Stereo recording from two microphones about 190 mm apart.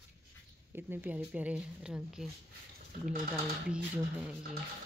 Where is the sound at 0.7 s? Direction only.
10° right (ahead or behind).